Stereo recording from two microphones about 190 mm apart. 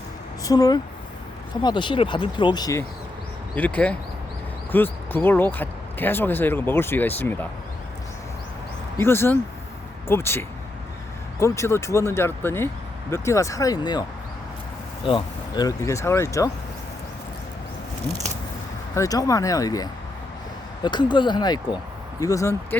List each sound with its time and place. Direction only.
0.4 s speech: 20° left (ahead or behind)
3.5 s speech: 10° left (ahead or behind)
9.0 s speech: 10° left (ahead or behind)
15.0 s speech: 25° left (ahead or behind)
18.9 s speech: 20° left (ahead or behind)